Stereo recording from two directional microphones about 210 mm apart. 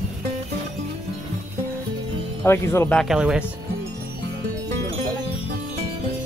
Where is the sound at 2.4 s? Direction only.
10° left (ahead or behind).